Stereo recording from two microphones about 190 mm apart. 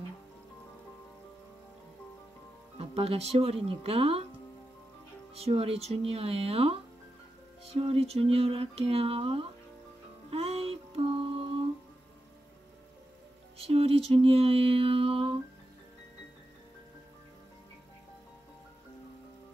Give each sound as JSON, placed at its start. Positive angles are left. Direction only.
{"t": 2.8, "sound": "speech", "side_deg": -30}
{"t": 5.3, "sound": "speech", "side_deg": -30}
{"t": 10.3, "sound": "music", "side_deg": -30}
{"t": 13.7, "sound": "speech", "side_deg": -30}